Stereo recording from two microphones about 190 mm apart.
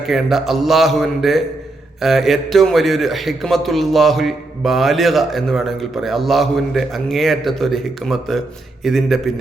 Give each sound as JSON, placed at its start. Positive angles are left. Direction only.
{"t": 0.1, "sound": "a man's voice", "side_deg": 0}